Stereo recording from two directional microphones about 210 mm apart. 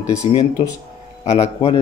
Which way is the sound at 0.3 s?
25° left (ahead or behind).